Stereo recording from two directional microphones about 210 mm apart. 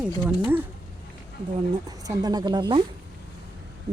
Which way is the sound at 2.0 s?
20° right (ahead or behind).